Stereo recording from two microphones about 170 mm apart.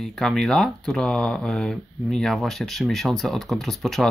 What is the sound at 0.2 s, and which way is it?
Speech, 5° left (ahead or behind).